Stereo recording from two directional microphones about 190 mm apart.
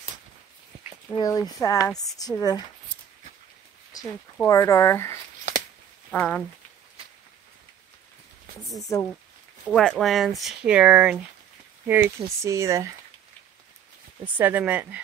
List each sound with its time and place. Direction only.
1.1 s speech: 20° left (ahead or behind)
4.5 s speech: 15° left (ahead or behind)
6.1 s speech: 5° left (ahead or behind)
8.7 s speech: 15° left (ahead or behind)
9.7 s speech: 5° left (ahead or behind); by 12.9 s 15° right (ahead or behind)
14.4 s speech: 10° right (ahead or behind)